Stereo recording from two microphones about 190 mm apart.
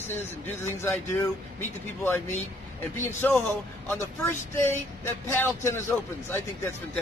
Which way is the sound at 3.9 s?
10° left (ahead or behind).